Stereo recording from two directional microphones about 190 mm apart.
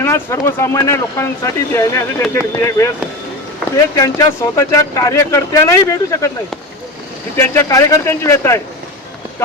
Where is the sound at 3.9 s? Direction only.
15° left (ahead or behind).